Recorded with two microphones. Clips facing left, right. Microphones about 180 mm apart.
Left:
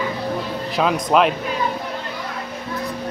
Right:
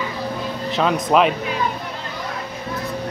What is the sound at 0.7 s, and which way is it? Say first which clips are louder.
Speech: even; centre (ahead or behind).